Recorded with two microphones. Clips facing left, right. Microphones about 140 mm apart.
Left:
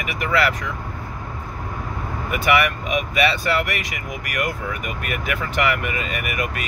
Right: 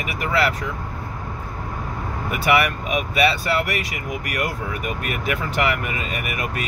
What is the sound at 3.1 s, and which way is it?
Speech, 35° right (ahead or behind).